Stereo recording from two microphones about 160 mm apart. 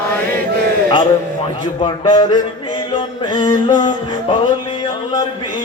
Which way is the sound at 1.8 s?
30° left (ahead or behind).